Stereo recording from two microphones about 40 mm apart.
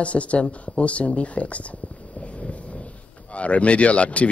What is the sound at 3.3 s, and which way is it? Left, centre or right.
Speech, left.